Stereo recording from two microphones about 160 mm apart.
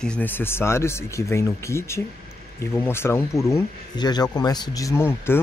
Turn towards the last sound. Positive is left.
turn(degrees=15)  # may be behind; listen again after turning